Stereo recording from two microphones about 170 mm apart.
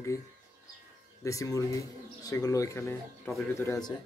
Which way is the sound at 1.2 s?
20° left (ahead or behind).